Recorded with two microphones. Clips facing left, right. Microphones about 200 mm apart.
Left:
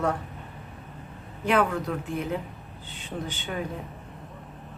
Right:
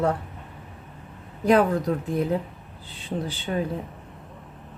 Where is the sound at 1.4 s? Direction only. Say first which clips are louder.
Right 5 dB; 35° right (ahead or behind).